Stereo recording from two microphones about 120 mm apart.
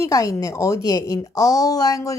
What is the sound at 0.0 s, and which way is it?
A woman's voice, 30° left (ahead or behind).